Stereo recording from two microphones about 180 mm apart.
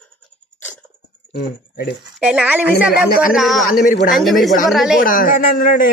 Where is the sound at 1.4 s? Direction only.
60° left (ahead or behind).